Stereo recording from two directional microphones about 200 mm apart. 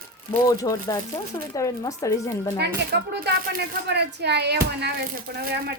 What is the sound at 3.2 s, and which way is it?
Speech, 55° right (ahead or behind).